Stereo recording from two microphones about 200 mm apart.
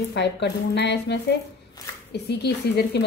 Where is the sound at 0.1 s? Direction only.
60° left (ahead or behind).